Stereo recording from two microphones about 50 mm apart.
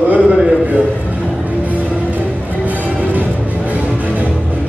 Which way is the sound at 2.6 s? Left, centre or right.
Right.